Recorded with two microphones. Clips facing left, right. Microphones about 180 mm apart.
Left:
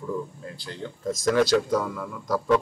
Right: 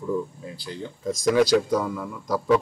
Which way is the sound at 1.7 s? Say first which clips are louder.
Right 1 dB; centre (ahead or behind).